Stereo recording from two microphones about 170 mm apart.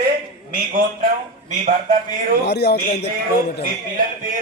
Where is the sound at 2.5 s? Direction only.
75° left (ahead or behind).